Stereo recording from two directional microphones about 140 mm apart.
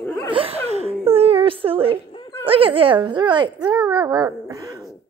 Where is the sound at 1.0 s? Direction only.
45° right (ahead or behind).